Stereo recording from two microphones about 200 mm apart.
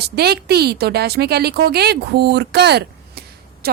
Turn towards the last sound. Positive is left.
turn(degrees=-50)  # may be behind; listen again after turning